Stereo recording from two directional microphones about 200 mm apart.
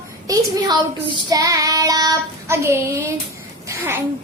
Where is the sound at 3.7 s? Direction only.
10° right (ahead or behind).